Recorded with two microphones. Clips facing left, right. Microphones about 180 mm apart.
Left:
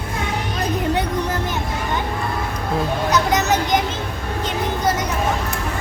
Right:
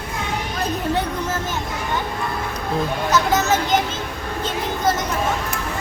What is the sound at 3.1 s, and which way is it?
Children playing, 15° left (ahead or behind).